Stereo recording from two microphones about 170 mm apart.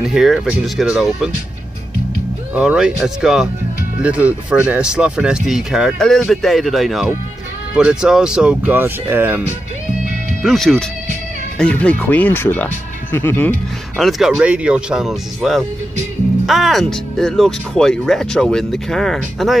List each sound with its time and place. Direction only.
0.0 s speech: centre (ahead or behind)
2.5 s speech: 5° right (ahead or behind)
10.4 s speech: centre (ahead or behind)
13.9 s speech: centre (ahead or behind)